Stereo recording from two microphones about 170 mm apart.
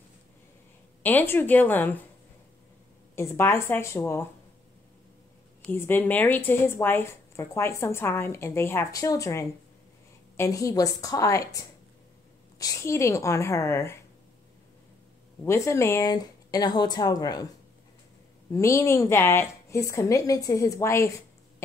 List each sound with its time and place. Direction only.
1.0 s a woman's voice: 10° left (ahead or behind)
3.2 s a woman's voice: 15° left (ahead or behind)
5.6 s a woman's voice: 10° left (ahead or behind)
15.4 s speech: 15° left (ahead or behind)
18.5 s a woman's voice: 15° left (ahead or behind)